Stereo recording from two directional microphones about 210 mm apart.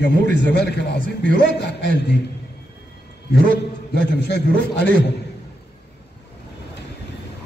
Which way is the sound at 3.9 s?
55° left (ahead or behind).